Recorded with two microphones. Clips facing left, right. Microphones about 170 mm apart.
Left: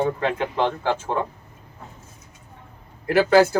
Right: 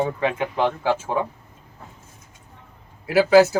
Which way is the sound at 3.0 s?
5° right (ahead or behind).